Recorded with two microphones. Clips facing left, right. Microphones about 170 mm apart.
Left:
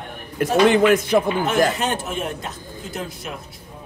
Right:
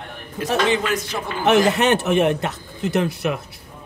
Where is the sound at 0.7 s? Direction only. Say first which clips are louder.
Left 6 dB; 55° left (ahead or behind).